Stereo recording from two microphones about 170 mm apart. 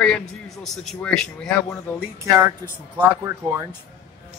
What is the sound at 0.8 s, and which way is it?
Speech, 5° left (ahead or behind).